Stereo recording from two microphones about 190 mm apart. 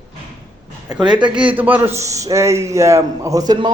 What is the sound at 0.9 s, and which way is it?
A man's voice, 5° right (ahead or behind).